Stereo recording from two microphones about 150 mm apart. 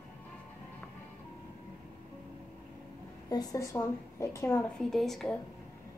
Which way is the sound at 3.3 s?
25° left (ahead or behind).